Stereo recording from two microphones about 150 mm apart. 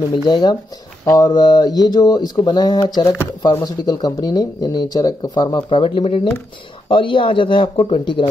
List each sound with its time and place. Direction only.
0.1 s speech: 30° left (ahead or behind)